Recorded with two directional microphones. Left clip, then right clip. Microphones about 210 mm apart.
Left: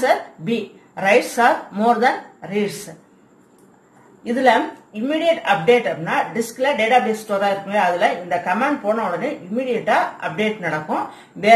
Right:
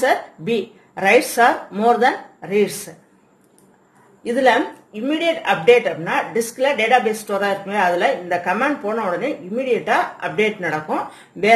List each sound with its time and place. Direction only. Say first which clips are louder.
0.0 s speech: even; 55° right (ahead or behind)
4.3 s a woman's voice: even; 50° right (ahead or behind)